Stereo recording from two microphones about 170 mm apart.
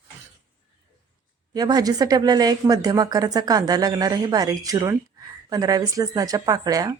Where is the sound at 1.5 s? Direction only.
25° right (ahead or behind).